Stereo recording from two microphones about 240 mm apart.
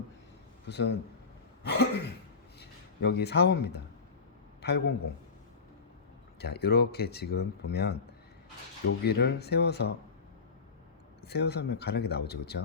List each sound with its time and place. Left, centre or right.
0.7 s speech: left
6.4 s speech: left
9.0 s speech: left
11.2 s speech: left